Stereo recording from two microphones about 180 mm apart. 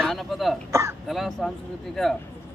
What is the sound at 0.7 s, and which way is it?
Speech, 15° right (ahead or behind).